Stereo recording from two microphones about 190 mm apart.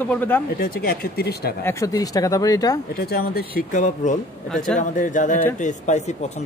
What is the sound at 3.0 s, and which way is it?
Speech, 55° left (ahead or behind).